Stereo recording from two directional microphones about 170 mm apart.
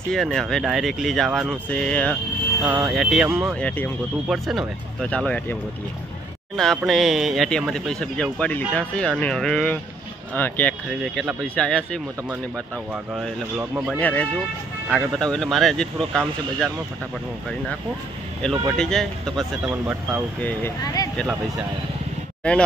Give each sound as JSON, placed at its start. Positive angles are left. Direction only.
{"t": 0.1, "sound": "speech", "side_deg": 5}
{"t": 3.5, "sound": "speech", "side_deg": 10}
{"t": 10.9, "sound": "speech", "side_deg": 0}
{"t": 12.9, "sound": "speech", "side_deg": -5}
{"t": 13.9, "sound": "speech", "side_deg": 10}
{"t": 18.4, "sound": "speech", "side_deg": 0}
{"t": 19.7, "sound": "speech", "side_deg": -10}
{"t": 20.4, "sound": "speech", "side_deg": 15}
{"t": 22.4, "sound": "speech", "side_deg": 5}